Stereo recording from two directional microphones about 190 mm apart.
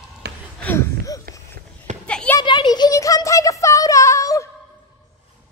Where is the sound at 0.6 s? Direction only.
10° left (ahead or behind).